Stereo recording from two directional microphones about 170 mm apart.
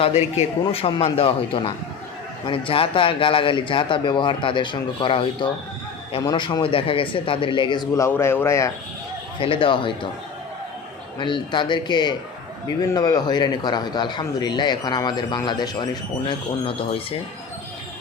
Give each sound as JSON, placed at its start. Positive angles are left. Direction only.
{"t": 0.3, "sound": "a man's voice", "side_deg": 35}
{"t": 9.4, "sound": "a man's voice", "side_deg": 30}
{"t": 11.2, "sound": "speech", "side_deg": 30}